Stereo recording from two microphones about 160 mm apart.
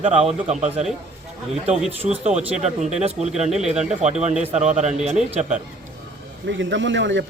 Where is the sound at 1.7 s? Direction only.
5° right (ahead or behind).